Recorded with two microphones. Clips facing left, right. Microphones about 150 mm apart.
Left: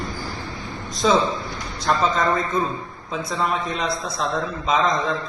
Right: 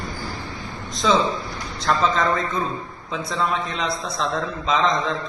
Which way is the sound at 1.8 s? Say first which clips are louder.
Even; centre (ahead or behind).